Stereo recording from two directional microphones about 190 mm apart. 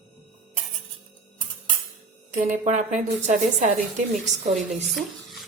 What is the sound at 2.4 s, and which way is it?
A woman's voice, 40° right (ahead or behind).